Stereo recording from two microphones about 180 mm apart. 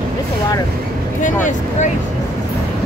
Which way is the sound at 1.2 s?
45° left (ahead or behind).